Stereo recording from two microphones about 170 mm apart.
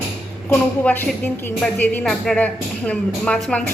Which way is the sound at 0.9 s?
10° left (ahead or behind).